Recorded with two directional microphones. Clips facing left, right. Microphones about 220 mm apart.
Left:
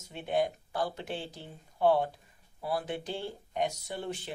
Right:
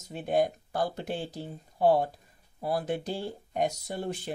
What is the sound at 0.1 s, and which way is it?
Speech, 40° right (ahead or behind).